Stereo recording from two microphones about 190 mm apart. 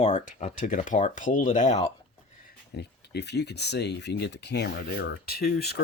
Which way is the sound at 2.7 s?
60° left (ahead or behind).